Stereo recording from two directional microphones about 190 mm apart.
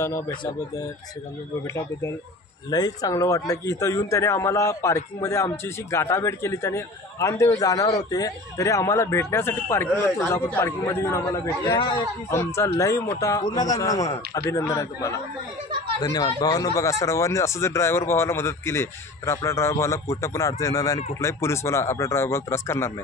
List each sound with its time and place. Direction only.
1.8 s a man's voice: 15° left (ahead or behind)